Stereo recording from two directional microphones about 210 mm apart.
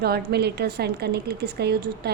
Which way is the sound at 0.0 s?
50° right (ahead or behind).